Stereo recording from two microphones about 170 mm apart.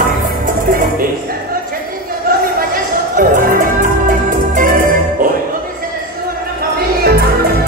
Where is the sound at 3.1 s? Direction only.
50° right (ahead or behind).